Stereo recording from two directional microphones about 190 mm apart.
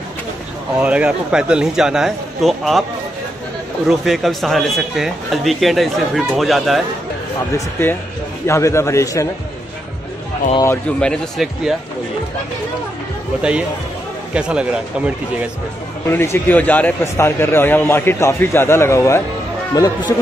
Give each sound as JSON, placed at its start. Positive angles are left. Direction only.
{"t": 0.7, "sound": "speech", "side_deg": -5}
{"t": 3.8, "sound": "speech", "side_deg": 0}
{"t": 7.5, "sound": "a man's voice", "side_deg": 10}
{"t": 10.6, "sound": "speech", "side_deg": 10}
{"t": 13.4, "sound": "speech", "side_deg": -5}
{"t": 16.1, "sound": "a man's voice", "side_deg": 15}